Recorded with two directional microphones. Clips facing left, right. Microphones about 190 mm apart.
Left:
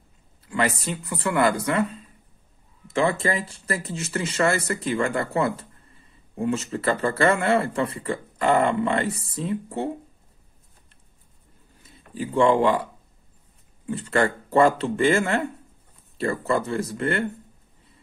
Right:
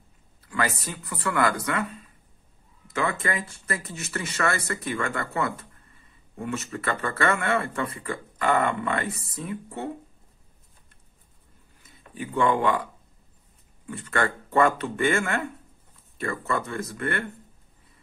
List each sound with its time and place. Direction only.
0.4 s speech: 25° left (ahead or behind)
12.1 s speech: 30° left (ahead or behind)
13.8 s speech: 30° left (ahead or behind)